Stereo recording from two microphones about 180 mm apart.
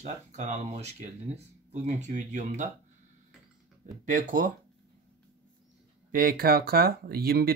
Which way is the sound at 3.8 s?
45° right (ahead or behind).